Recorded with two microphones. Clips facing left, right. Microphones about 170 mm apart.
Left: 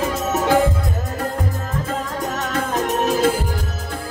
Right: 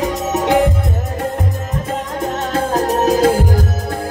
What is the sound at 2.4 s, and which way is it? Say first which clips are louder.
Music: right 5 dB; 30° right (ahead or behind).